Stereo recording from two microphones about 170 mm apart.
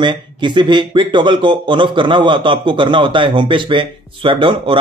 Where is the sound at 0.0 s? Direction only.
25° right (ahead or behind).